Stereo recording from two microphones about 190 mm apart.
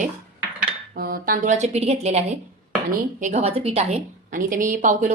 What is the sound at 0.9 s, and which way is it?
A woman's voice, 50° right (ahead or behind).